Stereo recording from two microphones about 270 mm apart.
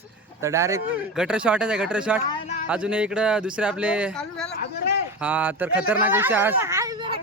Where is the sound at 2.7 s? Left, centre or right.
Centre.